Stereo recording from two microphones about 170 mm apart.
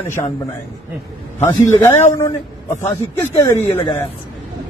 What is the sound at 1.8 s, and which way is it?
Speech, 15° left (ahead or behind).